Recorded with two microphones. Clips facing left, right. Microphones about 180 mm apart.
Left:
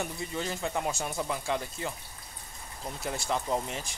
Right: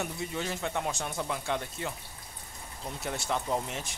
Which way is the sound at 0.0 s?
Centre (ahead or behind).